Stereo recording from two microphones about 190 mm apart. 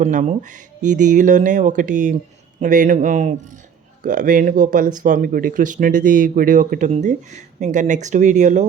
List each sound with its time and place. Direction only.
0.0 s speech: 40° right (ahead or behind)